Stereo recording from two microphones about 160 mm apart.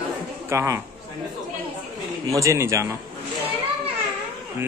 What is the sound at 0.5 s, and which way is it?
Speech, 15° right (ahead or behind).